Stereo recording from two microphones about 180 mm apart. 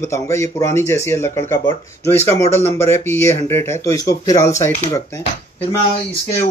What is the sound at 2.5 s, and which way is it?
Speech, 15° left (ahead or behind).